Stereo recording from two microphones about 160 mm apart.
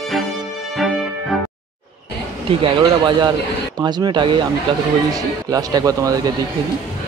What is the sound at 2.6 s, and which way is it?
Speech, 30° right (ahead or behind).